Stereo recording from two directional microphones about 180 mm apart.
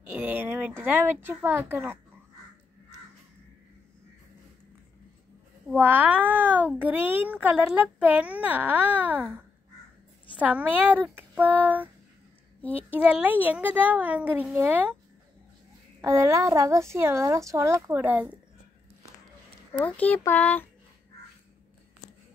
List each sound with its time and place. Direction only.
0.2 s speech: 10° right (ahead or behind)
5.7 s speech: 10° right (ahead or behind)
16.0 s speech: 15° right (ahead or behind)
19.8 s speech: 10° left (ahead or behind)